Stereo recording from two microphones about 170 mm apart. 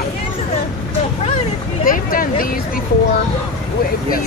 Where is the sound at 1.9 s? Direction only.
55° left (ahead or behind).